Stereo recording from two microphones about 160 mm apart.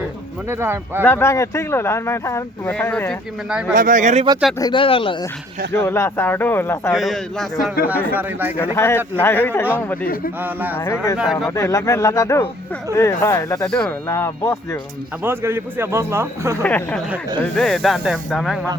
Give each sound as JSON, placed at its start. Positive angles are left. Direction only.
{"t": 0.4, "sound": "speech", "side_deg": -15}
{"t": 1.0, "sound": "speech", "side_deg": 15}
{"t": 3.8, "sound": "speech", "side_deg": -55}
{"t": 4.5, "sound": "speech", "side_deg": 25}
{"t": 5.8, "sound": "speech", "side_deg": 15}
{"t": 6.9, "sound": "speech", "side_deg": 0}
{"t": 7.9, "sound": "speech", "side_deg": -10}
{"t": 8.7, "sound": "speech", "side_deg": 15}
{"t": 10.4, "sound": "speech", "side_deg": -10}
{"t": 10.8, "sound": "speech", "side_deg": 15}
{"t": 13.7, "sound": "speech", "side_deg": 5}
{"t": 14.1, "sound": "speech", "side_deg": 15}
{"t": 15.2, "sound": "speech", "side_deg": -15}
{"t": 16.6, "sound": "speech", "side_deg": 10}